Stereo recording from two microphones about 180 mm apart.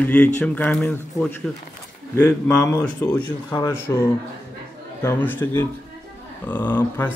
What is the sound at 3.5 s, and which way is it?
Speech, 25° left (ahead or behind).